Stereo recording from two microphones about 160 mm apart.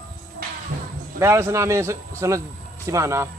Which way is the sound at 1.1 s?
20° right (ahead or behind).